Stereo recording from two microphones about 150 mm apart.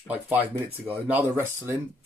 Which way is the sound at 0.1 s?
10° right (ahead or behind).